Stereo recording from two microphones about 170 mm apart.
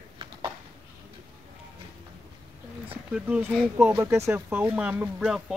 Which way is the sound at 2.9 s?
10° right (ahead or behind).